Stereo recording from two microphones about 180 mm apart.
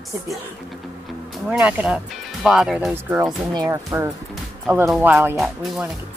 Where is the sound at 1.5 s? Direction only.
5° right (ahead or behind).